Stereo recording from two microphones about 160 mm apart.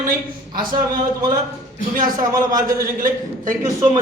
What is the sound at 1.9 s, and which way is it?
Speech, 60° right (ahead or behind).